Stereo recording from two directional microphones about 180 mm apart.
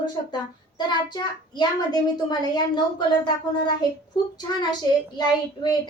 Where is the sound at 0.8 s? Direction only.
25° left (ahead or behind).